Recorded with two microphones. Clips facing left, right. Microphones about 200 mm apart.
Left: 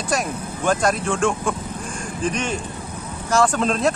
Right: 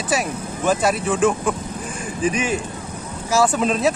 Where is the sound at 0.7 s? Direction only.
5° right (ahead or behind).